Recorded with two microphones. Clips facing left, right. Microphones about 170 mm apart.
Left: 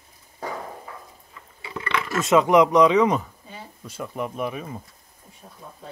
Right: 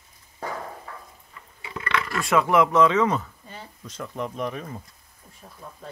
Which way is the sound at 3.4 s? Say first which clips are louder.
Left 1 dB; 5° left (ahead or behind).